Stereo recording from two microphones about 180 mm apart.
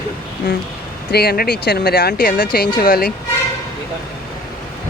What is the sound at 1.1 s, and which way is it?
Speech, 60° left (ahead or behind).